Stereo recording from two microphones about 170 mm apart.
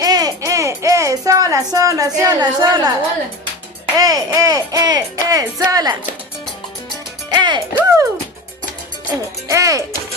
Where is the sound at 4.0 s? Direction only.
20° right (ahead or behind).